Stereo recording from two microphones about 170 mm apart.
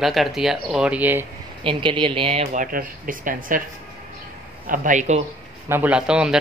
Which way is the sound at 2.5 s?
55° right (ahead or behind).